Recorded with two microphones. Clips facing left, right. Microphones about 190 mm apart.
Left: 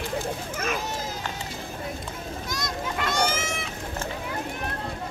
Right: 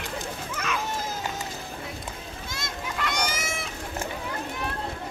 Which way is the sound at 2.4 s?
25° right (ahead or behind).